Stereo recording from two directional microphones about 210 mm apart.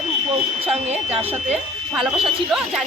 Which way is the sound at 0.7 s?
30° right (ahead or behind).